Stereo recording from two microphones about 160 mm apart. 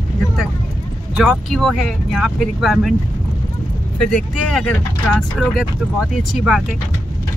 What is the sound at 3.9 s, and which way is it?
Speech, 5° left (ahead or behind).